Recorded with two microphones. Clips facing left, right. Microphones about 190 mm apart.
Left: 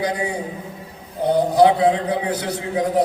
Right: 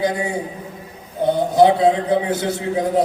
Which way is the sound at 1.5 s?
25° right (ahead or behind).